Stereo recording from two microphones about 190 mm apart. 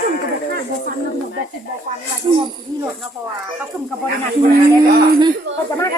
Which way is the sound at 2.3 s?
25° right (ahead or behind).